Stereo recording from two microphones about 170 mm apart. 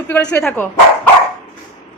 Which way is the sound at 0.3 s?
10° left (ahead or behind).